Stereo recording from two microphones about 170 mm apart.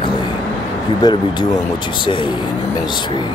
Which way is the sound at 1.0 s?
25° left (ahead or behind).